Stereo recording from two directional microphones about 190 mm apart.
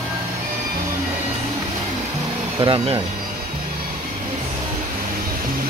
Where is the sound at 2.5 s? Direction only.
25° right (ahead or behind).